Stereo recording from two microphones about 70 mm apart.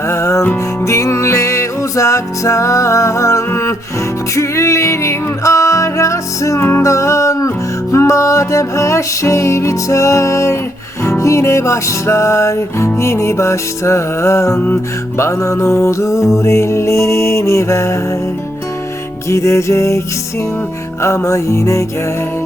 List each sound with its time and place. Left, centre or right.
0.1 s music: left
6.6 s music: left
6.8 s music: left
19.3 s music: left
21.0 s music: left